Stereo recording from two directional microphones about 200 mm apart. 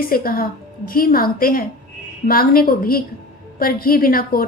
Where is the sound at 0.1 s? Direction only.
45° left (ahead or behind).